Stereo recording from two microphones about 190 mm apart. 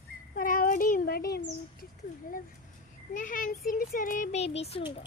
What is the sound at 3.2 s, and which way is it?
A child's voice, 45° left (ahead or behind).